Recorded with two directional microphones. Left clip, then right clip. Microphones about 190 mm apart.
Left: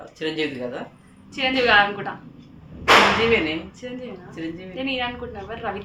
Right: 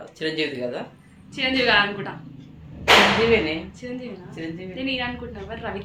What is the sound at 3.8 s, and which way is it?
A woman's voice, 10° left (ahead or behind).